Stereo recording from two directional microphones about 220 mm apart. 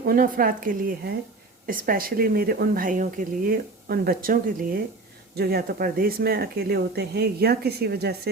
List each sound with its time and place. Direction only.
0.0 s speech: 40° right (ahead or behind)
5.4 s speech: 45° right (ahead or behind)